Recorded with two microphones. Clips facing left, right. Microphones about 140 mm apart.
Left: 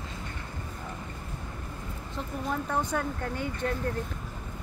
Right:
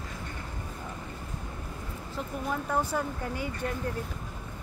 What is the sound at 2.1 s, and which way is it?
Speech, 5° right (ahead or behind).